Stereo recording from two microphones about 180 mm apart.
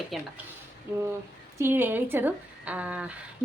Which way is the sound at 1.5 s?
10° right (ahead or behind).